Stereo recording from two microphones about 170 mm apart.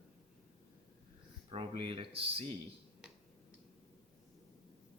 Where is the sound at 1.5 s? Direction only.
30° right (ahead or behind).